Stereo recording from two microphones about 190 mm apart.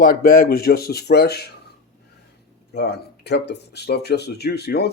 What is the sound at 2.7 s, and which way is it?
Speech, 60° left (ahead or behind).